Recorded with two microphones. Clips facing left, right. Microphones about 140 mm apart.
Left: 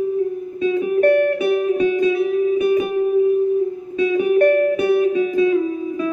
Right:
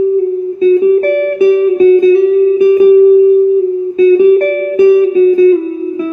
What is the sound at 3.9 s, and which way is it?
Music, 30° right (ahead or behind).